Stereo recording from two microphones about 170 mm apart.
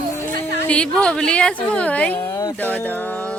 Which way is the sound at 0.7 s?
5° left (ahead or behind).